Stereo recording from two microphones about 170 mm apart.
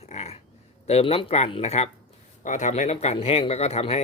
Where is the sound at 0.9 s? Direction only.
35° left (ahead or behind).